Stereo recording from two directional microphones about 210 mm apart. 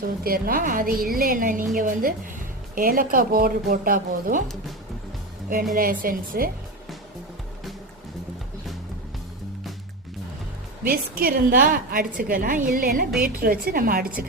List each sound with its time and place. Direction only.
0.0 s a woman's voice: 45° right (ahead or behind)
5.7 s a woman's voice: 40° right (ahead or behind)
10.8 s a woman's voice: 45° right (ahead or behind)